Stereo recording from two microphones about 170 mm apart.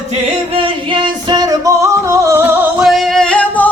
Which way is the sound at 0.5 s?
30° right (ahead or behind).